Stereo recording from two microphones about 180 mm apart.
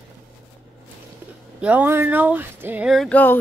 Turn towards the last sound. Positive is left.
turn(degrees=10)  # may be behind; listen again after turning